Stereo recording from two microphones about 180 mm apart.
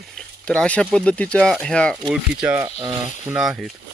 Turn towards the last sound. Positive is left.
turn(degrees=0)  # may be behind; listen again after turning